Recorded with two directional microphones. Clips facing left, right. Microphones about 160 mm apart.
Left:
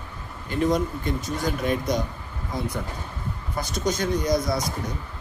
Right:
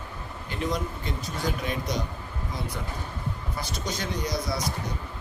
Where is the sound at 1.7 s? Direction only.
50° left (ahead or behind).